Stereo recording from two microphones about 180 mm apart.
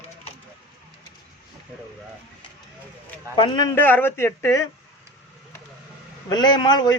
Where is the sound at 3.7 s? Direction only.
10° left (ahead or behind).